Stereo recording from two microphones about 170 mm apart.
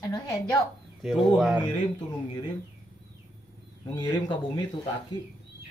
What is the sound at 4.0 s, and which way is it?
Speech, 25° left (ahead or behind).